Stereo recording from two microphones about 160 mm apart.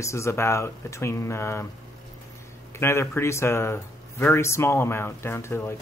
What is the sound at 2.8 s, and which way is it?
Speech, 15° left (ahead or behind).